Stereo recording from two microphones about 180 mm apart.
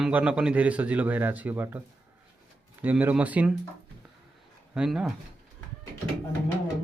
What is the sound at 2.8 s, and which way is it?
Speech, 10° right (ahead or behind).